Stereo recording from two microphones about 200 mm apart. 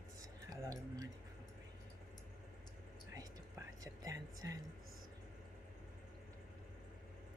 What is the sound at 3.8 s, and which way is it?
Speech, 15° right (ahead or behind).